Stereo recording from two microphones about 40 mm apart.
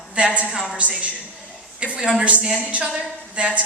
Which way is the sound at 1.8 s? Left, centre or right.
Right.